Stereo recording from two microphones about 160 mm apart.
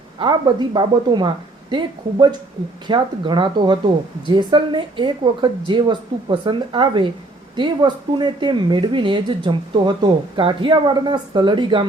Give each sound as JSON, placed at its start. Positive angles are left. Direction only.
{"t": 0.2, "sound": "speech", "side_deg": -30}